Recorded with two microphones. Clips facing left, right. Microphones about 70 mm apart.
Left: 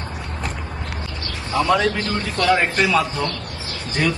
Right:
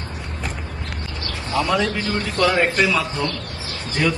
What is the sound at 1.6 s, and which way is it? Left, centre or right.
Speech, centre.